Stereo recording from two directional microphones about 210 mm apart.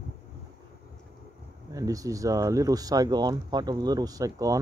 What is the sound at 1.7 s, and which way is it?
Speech, 15° right (ahead or behind).